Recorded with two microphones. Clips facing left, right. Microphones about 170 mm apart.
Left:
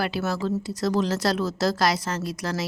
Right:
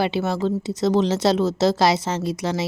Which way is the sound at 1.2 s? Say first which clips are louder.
Right 5 dB; 25° right (ahead or behind).